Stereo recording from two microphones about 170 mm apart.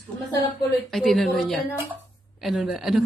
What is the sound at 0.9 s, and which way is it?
A woman's voice, centre (ahead or behind).